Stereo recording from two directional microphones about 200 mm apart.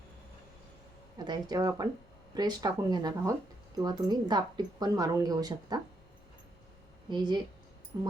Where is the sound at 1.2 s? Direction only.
20° right (ahead or behind).